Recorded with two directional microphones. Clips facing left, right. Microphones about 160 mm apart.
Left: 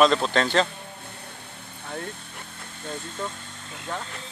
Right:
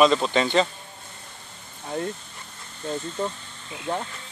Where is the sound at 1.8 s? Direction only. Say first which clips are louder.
Right 6 dB; 20° right (ahead or behind).